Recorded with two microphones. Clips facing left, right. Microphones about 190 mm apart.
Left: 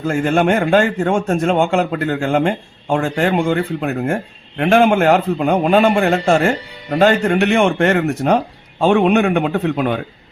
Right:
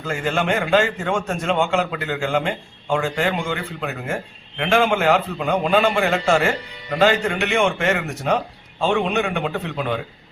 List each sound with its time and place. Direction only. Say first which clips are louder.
0.0 s a man's voice: left 7 dB; 50° left (ahead or behind)